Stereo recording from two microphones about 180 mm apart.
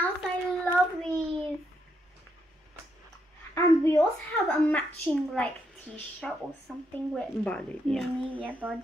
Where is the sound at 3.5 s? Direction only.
15° left (ahead or behind).